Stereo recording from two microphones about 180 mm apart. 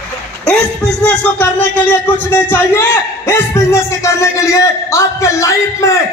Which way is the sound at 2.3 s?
10° left (ahead or behind).